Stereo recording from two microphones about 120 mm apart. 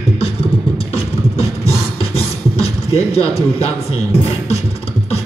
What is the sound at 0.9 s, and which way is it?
Beatboxing, 60° left (ahead or behind).